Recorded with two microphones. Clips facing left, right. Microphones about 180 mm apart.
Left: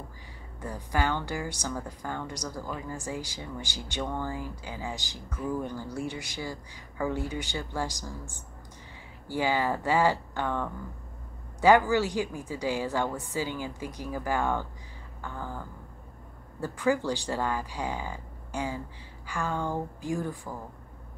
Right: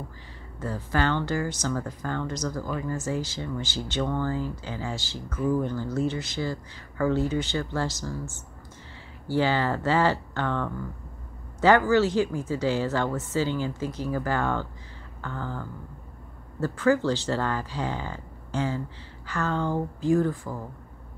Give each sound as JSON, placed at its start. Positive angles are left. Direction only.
{"t": 0.6, "sound": "speech", "side_deg": 15}